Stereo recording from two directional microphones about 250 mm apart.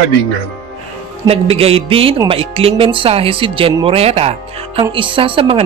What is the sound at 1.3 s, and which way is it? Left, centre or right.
Speech, right.